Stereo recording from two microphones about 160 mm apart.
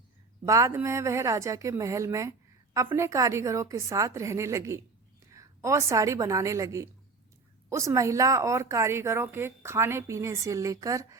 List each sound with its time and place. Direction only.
0.4 s a woman's voice: 20° right (ahead or behind)